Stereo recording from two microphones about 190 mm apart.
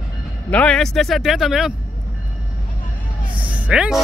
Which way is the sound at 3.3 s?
5° right (ahead or behind).